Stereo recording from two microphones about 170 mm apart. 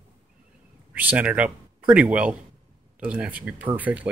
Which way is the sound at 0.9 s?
10° right (ahead or behind).